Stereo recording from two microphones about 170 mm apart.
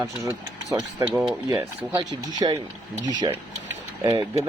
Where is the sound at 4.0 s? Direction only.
20° right (ahead or behind).